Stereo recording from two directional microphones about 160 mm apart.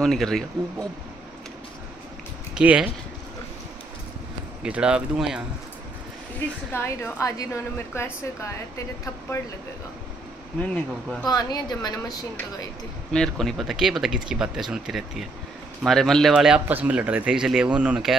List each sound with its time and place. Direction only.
0.0 s speech: centre (ahead or behind)
2.5 s speech: 5° right (ahead or behind)
4.6 s speech: 5° right (ahead or behind)
6.7 s a woman's voice: 15° left (ahead or behind)
10.6 s a woman's voice: 10° left (ahead or behind)
11.2 s a woman's voice: 25° left (ahead or behind)
13.1 s speech: 5° left (ahead or behind)